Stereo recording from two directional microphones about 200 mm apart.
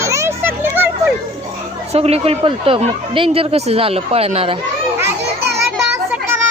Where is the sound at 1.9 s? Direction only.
30° right (ahead or behind).